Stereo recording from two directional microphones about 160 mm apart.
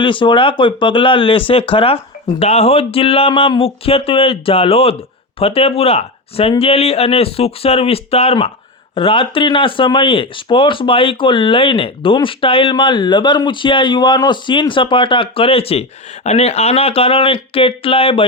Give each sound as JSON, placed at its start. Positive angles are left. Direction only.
{"t": 0.0, "sound": "speech", "side_deg": 30}